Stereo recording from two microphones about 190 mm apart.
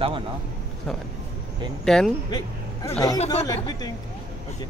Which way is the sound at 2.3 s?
20° left (ahead or behind).